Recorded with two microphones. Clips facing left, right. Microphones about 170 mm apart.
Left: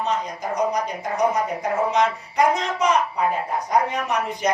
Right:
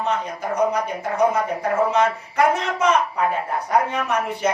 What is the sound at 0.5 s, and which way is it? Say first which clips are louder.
A woman's voice: right 2 dB; 15° left (ahead or behind).